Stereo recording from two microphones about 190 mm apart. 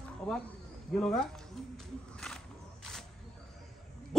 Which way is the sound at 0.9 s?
5° left (ahead or behind).